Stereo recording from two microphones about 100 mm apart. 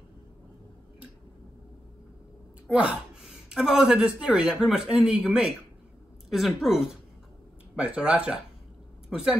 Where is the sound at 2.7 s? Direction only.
10° right (ahead or behind).